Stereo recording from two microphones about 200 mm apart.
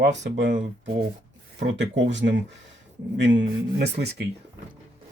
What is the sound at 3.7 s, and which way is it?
Speech, 55° right (ahead or behind).